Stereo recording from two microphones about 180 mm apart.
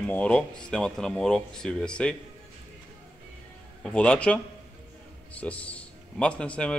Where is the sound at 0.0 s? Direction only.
5° left (ahead or behind).